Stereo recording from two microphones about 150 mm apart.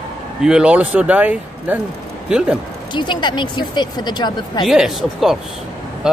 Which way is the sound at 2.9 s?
30° left (ahead or behind).